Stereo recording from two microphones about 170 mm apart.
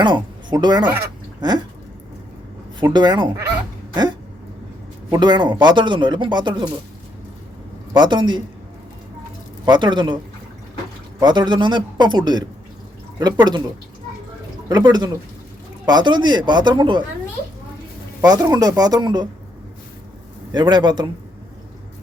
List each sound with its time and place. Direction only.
0.0 s speech: 25° right (ahead or behind)
1.4 s a sound: 25° right (ahead or behind)
2.8 s speech: 25° right (ahead or behind)
5.1 s speech: 25° right (ahead or behind)
7.9 s speech: 25° right (ahead or behind)
9.6 s speech: 25° right (ahead or behind)
11.2 s speech: 25° right (ahead or behind)
14.7 s speech: 25° right (ahead or behind)
18.2 s speech: 20° right (ahead or behind)
20.5 s speech: 25° right (ahead or behind)